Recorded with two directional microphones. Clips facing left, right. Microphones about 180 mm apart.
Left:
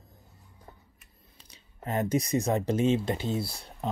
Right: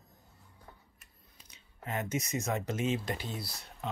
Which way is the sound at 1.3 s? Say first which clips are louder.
Left 4 dB; 35° left (ahead or behind).